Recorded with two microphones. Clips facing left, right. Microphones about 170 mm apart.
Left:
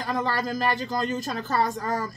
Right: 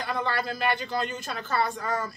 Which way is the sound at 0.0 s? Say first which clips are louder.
Left 2 dB; 40° left (ahead or behind).